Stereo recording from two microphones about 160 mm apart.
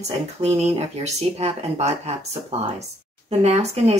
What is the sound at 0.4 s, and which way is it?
Speech, 45° right (ahead or behind).